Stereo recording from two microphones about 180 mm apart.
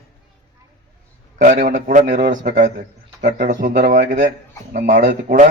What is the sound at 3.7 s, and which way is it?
Speech, 65° right (ahead or behind).